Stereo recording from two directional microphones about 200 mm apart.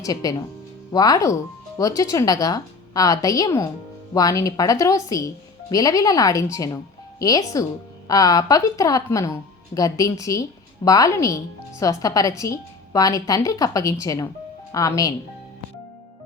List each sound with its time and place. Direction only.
0.0 s a woman's voice: 20° left (ahead or behind)